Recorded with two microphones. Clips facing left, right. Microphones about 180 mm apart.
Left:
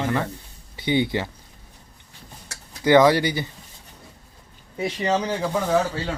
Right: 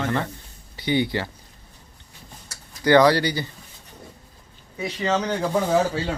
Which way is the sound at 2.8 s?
20° left (ahead or behind).